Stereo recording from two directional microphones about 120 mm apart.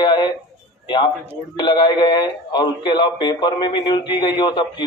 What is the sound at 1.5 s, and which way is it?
A man's voice, 40° left (ahead or behind).